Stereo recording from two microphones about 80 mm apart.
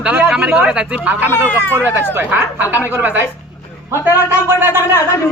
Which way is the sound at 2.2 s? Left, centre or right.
Right.